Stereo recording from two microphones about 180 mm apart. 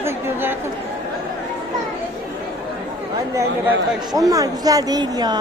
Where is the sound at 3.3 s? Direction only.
15° right (ahead or behind).